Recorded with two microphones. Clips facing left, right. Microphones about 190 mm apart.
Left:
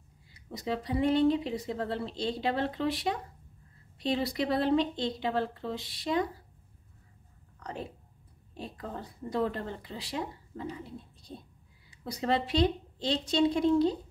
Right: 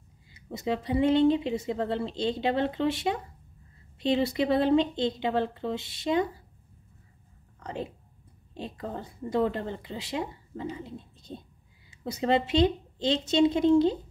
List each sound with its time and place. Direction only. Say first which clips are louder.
0.3 s speech: right 4 dB; 25° right (ahead or behind)
7.6 s speech: right 4 dB; 25° right (ahead or behind)